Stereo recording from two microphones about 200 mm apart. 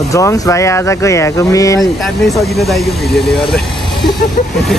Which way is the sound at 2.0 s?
Centre (ahead or behind).